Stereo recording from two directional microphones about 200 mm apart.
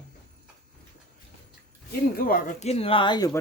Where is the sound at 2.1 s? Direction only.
45° left (ahead or behind); by 3.4 s 20° left (ahead or behind).